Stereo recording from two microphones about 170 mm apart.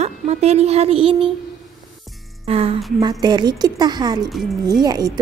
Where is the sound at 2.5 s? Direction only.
35° right (ahead or behind).